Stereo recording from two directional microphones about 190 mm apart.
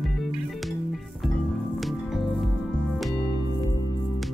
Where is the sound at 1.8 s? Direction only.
Centre (ahead or behind).